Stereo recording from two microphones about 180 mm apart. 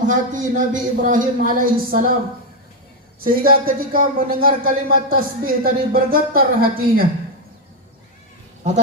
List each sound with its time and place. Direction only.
0.0 s speech: 45° right (ahead or behind)
3.2 s speech: 55° right (ahead or behind)